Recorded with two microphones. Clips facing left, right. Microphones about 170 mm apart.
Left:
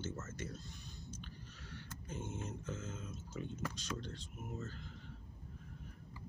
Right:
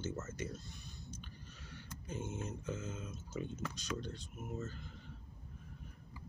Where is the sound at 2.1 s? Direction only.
15° right (ahead or behind).